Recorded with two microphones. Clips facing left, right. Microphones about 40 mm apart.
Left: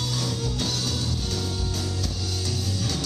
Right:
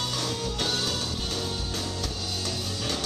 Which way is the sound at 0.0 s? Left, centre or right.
Right.